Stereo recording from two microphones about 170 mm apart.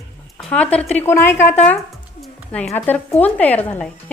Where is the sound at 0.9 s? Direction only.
15° left (ahead or behind).